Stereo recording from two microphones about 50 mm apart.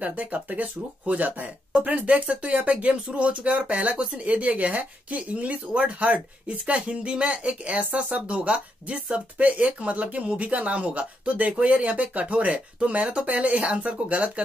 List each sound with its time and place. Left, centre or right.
0.0 s speech: right